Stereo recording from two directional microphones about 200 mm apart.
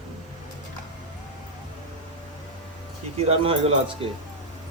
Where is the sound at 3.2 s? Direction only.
30° right (ahead or behind).